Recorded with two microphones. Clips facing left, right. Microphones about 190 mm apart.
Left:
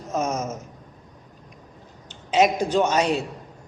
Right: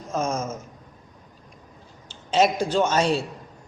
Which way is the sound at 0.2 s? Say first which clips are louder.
Even; 20° left (ahead or behind).